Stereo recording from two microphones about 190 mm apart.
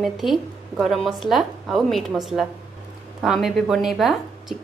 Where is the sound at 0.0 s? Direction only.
Centre (ahead or behind).